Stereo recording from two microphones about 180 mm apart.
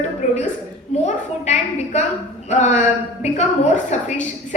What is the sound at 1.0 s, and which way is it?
A woman's voice, 40° left (ahead or behind).